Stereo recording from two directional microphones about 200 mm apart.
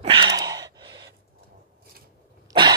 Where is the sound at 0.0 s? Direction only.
25° right (ahead or behind).